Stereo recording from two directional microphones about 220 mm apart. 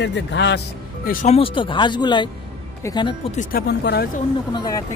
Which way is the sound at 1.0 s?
35° left (ahead or behind).